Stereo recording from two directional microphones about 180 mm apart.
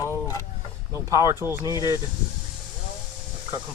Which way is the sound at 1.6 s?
20° left (ahead or behind).